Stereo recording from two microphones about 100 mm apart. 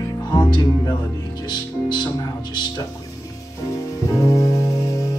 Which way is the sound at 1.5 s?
45° left (ahead or behind).